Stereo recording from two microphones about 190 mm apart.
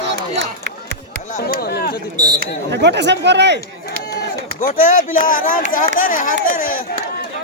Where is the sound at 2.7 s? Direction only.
65° right (ahead or behind).